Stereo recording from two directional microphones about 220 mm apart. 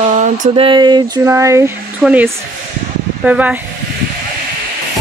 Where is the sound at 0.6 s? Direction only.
20° right (ahead or behind).